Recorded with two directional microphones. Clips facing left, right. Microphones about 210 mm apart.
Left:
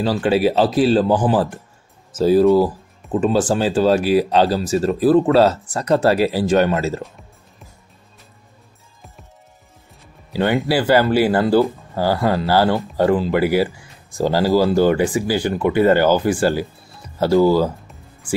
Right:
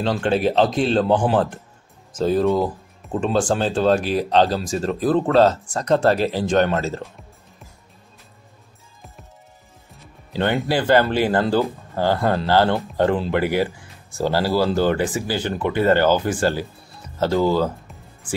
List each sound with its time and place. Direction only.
0.0 s speech: 5° left (ahead or behind)
10.5 s speech: 5° left (ahead or behind)
17.2 s music: 10° left (ahead or behind)